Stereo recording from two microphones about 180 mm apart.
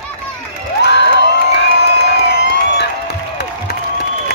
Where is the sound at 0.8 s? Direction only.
75° left (ahead or behind).